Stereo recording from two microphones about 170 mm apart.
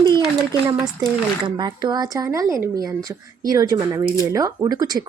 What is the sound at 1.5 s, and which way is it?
A woman's voice, 25° right (ahead or behind).